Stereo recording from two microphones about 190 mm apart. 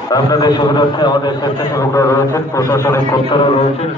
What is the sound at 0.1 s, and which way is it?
A man's voice, 20° left (ahead or behind).